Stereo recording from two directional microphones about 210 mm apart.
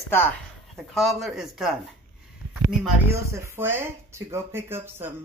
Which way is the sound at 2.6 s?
10° right (ahead or behind).